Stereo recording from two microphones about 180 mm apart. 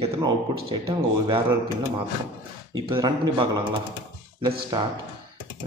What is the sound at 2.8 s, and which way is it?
Speech, 20° right (ahead or behind).